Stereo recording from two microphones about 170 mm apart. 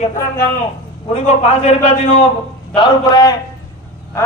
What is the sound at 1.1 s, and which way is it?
A man's voice, 40° left (ahead or behind).